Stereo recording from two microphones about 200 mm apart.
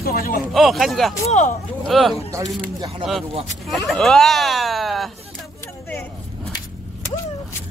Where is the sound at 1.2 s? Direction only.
35° left (ahead or behind).